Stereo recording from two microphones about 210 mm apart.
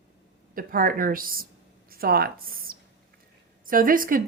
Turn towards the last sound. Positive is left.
turn(degrees=-40)  # may be behind; listen again after turning